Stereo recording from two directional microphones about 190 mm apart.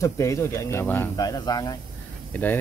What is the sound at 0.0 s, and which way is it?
Speech, 15° left (ahead or behind).